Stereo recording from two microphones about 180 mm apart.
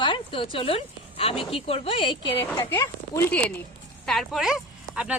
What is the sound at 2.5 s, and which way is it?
Speech, 15° left (ahead or behind).